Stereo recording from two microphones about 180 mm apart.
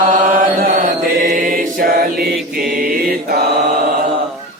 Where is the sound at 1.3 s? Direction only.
50° right (ahead or behind).